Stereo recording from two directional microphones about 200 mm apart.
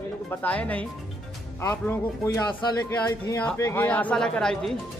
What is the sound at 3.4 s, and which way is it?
A man's voice, 10° left (ahead or behind).